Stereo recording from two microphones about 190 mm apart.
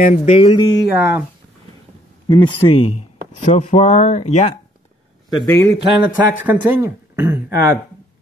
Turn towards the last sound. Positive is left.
turn(degrees=-10)  # may be behind; listen again after turning